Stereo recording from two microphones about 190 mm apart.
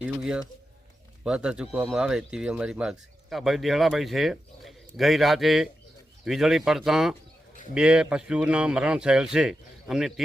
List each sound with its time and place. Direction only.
0.0 s speech: 5° right (ahead or behind)